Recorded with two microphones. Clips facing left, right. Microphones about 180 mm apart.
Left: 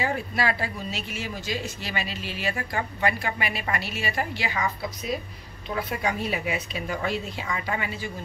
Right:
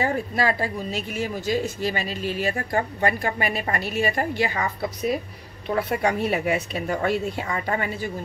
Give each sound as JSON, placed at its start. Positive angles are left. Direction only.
{"t": 0.0, "sound": "a woman's voice", "side_deg": -40}